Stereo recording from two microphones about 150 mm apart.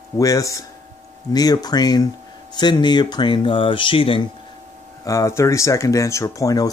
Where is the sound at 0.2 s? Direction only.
20° left (ahead or behind); by 4.2 s 35° left (ahead or behind).